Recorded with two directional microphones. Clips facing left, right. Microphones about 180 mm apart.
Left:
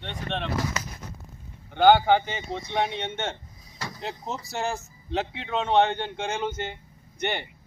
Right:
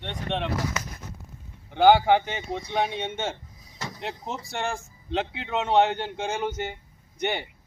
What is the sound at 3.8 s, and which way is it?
Vehicle, 20° right (ahead or behind).